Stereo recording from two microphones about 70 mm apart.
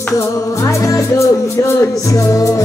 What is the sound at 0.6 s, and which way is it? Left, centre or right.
Music, left.